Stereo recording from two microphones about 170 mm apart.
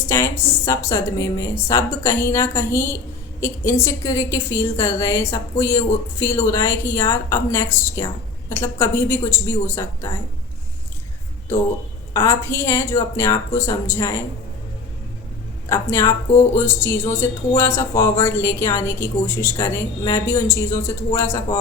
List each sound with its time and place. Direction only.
0.1 s a woman's voice: 15° left (ahead or behind)
12.1 s a woman's voice: 15° left (ahead or behind)
15.7 s a woman's voice: 15° left (ahead or behind)